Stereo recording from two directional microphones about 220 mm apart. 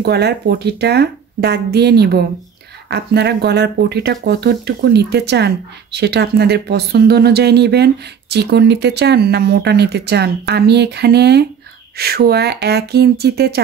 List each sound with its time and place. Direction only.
0.0 s speech: 50° right (ahead or behind)